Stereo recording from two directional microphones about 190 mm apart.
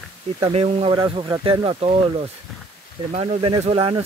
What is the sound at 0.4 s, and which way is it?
Speech, 35° right (ahead or behind).